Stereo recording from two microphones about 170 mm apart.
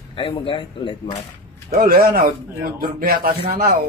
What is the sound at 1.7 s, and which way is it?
Speech, 60° right (ahead or behind).